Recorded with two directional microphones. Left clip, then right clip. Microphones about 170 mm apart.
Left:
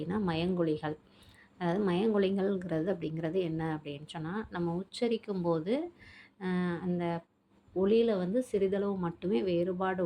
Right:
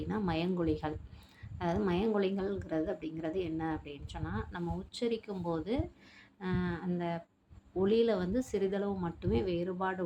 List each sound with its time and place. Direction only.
0.0 s a woman's voice: 15° left (ahead or behind)